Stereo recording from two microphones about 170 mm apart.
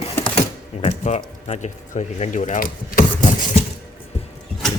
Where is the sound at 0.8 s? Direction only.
40° left (ahead or behind).